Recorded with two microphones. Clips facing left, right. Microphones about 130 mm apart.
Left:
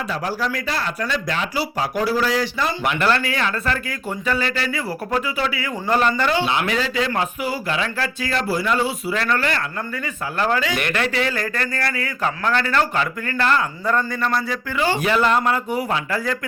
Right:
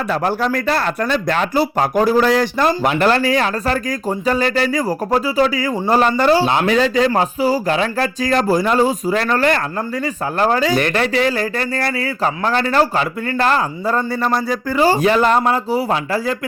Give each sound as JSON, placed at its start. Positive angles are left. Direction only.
{"t": 0.1, "sound": "speech", "side_deg": -55}
{"t": 2.9, "sound": "speech", "side_deg": -35}